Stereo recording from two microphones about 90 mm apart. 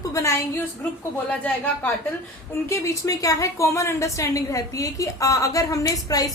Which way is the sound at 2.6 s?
35° left (ahead or behind).